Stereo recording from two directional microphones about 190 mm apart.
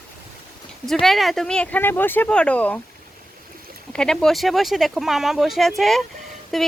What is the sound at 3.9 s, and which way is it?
Speech, 5° left (ahead or behind).